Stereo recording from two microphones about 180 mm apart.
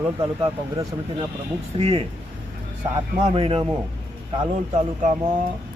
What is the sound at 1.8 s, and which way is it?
Speech, 35° right (ahead or behind).